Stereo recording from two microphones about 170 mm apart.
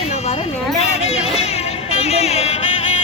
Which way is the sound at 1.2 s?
35° left (ahead or behind).